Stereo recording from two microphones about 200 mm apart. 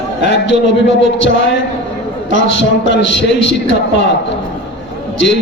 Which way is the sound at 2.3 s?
60° left (ahead or behind).